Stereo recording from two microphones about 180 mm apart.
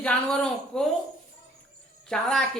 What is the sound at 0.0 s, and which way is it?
Speech, 5° left (ahead or behind).